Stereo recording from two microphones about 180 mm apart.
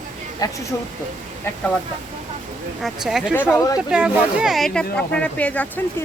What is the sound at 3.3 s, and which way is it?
Speech, 10° left (ahead or behind).